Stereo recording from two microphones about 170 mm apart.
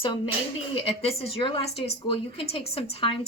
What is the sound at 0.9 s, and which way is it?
A woman's voice, 35° left (ahead or behind).